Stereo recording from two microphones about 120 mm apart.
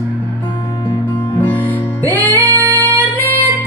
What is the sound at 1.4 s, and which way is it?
Music, 15° left (ahead or behind).